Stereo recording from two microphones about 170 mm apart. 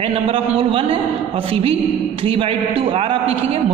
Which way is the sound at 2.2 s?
30° right (ahead or behind).